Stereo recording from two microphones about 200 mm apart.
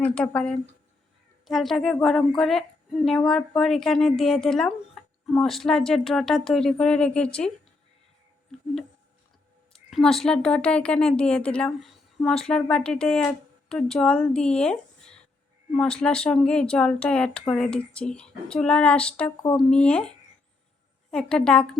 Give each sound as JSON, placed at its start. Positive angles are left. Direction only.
{"t": 0.0, "sound": "speech", "side_deg": 5}
{"t": 9.7, "sound": "a woman's voice", "side_deg": 0}